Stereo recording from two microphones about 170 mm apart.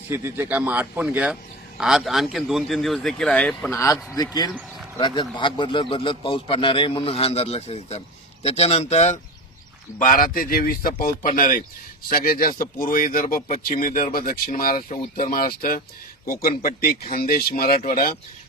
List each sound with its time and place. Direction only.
0.1 s speech: 15° right (ahead or behind); by 3.7 s 5° left (ahead or behind)
3.7 s speech: 15° left (ahead or behind)
4.9 s a man's voice: 30° left (ahead or behind)
10.0 s speech: 50° left (ahead or behind)